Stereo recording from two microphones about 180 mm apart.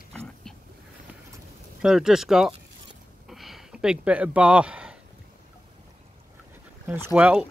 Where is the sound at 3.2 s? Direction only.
Centre (ahead or behind).